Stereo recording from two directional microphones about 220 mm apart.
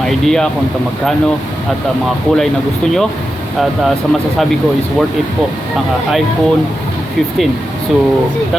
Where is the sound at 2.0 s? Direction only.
5° left (ahead or behind).